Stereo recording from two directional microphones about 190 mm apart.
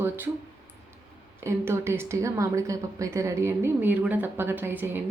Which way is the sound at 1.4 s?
10° right (ahead or behind).